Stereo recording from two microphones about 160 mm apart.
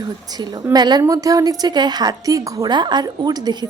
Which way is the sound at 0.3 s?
25° right (ahead or behind).